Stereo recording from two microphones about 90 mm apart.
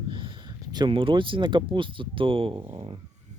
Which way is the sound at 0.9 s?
75° right (ahead or behind).